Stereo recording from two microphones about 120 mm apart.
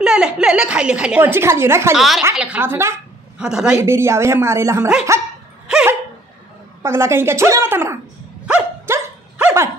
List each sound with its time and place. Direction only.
0.0 s a woman's voice: 5° right (ahead or behind); by 2.0 s 20° right (ahead or behind)
2.0 s a woman's voice: centre (ahead or behind)
2.6 s speech: 20° right (ahead or behind)
3.3 s speech: 5° right (ahead or behind)
3.8 s speech: 20° right (ahead or behind)
5.1 s dog: 25° right (ahead or behind)
5.7 s a sound: 5° right (ahead or behind)
6.8 s speech: 20° right (ahead or behind)
8.8 s dog: 20° right (ahead or behind)